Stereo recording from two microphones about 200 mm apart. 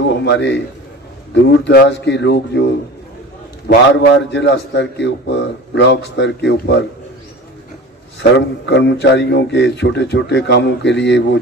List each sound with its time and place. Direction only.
0.0 s a man's voice: 60° left (ahead or behind)
3.6 s a man's voice: 60° left (ahead or behind)
8.2 s a man's voice: 60° left (ahead or behind)